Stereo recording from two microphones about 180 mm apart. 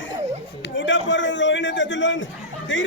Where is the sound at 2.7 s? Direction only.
90° left.